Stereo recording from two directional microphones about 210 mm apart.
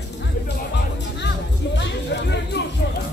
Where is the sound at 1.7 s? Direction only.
55° left (ahead or behind).